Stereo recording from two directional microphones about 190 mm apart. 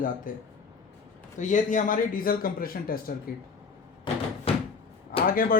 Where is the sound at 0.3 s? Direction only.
45° left (ahead or behind).